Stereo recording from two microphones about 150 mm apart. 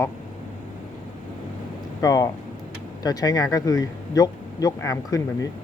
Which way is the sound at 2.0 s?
25° left (ahead or behind).